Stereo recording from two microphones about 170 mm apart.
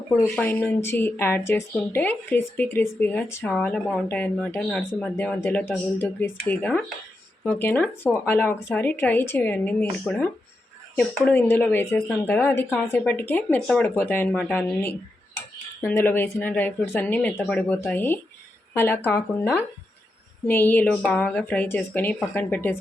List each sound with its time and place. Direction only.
0.3 s speech: 10° left (ahead or behind)
10.9 s speech: 10° left (ahead or behind)